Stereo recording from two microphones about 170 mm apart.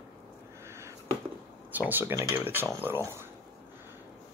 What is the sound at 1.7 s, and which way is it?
Speech, 10° right (ahead or behind).